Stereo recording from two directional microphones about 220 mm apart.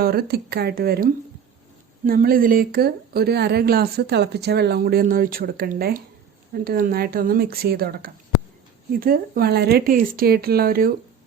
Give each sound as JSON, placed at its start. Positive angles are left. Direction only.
{"t": 0.0, "sound": "speech", "side_deg": -45}